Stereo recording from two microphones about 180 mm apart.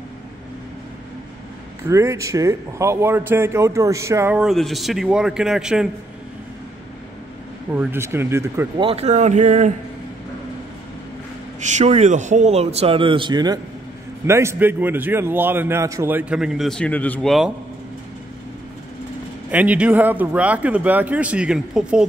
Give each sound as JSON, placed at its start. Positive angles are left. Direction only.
{"t": 1.9, "sound": "speech", "side_deg": -15}
{"t": 4.4, "sound": "a man's voice", "side_deg": 0}
{"t": 7.7, "sound": "speech", "side_deg": -10}
{"t": 8.7, "sound": "speech", "side_deg": -30}
{"t": 11.6, "sound": "speech", "side_deg": -40}
{"t": 19.5, "sound": "speech", "side_deg": -10}